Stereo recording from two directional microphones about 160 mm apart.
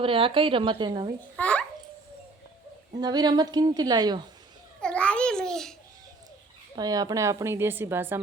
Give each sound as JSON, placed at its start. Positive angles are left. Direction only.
{"t": 0.0, "sound": "a woman's voice", "side_deg": -35}
{"t": 1.4, "sound": "babbling", "side_deg": 5}
{"t": 2.9, "sound": "a woman's voice", "side_deg": -25}
{"t": 4.8, "sound": "babbling", "side_deg": 5}
{"t": 6.7, "sound": "a woman's voice", "side_deg": -25}